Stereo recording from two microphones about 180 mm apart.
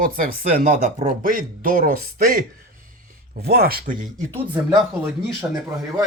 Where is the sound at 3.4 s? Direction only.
60° right (ahead or behind).